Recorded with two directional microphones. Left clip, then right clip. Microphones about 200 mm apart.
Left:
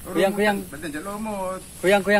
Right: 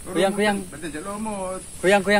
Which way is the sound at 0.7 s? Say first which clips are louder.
Even; 20° left (ahead or behind).